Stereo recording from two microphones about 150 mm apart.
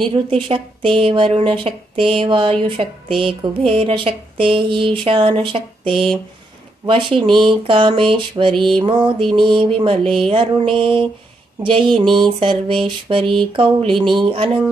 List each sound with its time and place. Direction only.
0.1 s mantra: 35° right (ahead or behind)